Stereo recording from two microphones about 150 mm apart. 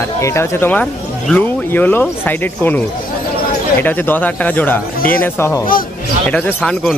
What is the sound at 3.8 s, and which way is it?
Speech, 10° left (ahead or behind).